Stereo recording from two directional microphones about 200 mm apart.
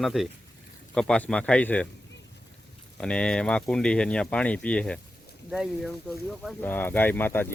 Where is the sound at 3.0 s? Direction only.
5° left (ahead or behind).